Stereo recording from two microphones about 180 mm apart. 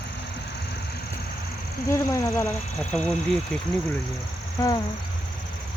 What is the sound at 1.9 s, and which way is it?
Speech, 15° left (ahead or behind).